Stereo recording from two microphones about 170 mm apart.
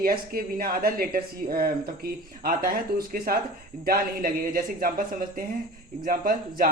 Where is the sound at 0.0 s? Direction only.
60° right (ahead or behind).